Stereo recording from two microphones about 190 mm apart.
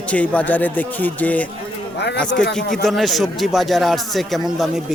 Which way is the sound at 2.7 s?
Centre (ahead or behind).